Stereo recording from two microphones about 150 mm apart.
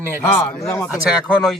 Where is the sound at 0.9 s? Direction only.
5° right (ahead or behind).